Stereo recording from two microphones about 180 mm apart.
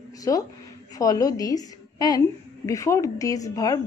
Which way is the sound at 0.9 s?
20° left (ahead or behind).